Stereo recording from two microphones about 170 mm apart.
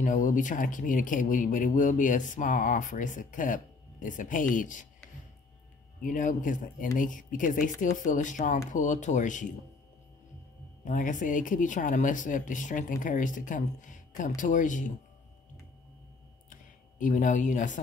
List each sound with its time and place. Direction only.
0.0 s speech: 50° left (ahead or behind)
6.0 s speech: 50° left (ahead or behind)
10.9 s speech: 50° left (ahead or behind)
17.0 s speech: 50° left (ahead or behind)